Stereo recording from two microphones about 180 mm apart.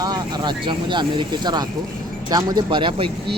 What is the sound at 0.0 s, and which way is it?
Speech, 25° right (ahead or behind).